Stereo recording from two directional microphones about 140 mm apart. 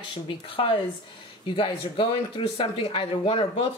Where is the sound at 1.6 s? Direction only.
35° left (ahead or behind).